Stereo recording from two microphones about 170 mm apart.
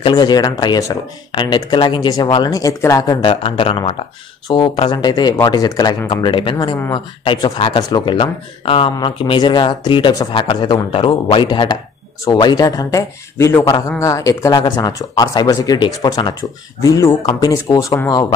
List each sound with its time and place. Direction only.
0.0 s speech: 25° left (ahead or behind)